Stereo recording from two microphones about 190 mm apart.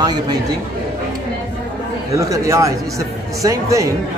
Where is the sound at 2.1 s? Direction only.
15° right (ahead or behind).